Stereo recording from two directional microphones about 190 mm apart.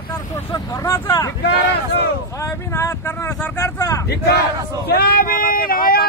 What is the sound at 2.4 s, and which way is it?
Speech, 15° left (ahead or behind).